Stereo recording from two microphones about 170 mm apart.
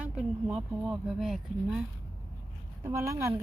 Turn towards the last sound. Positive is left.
turn(degrees=-15)  # may be behind; listen again after turning